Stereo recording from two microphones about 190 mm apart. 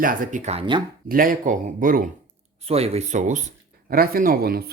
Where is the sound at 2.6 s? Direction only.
30° right (ahead or behind).